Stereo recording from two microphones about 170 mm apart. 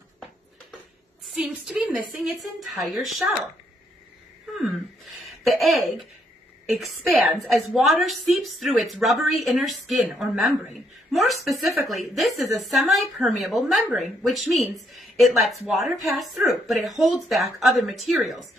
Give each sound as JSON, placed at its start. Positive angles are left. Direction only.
{"t": 1.2, "sound": "a sound", "side_deg": -5}
{"t": 1.7, "sound": "a woman's voice", "side_deg": -5}
{"t": 5.2, "sound": "a woman's voice", "side_deg": 0}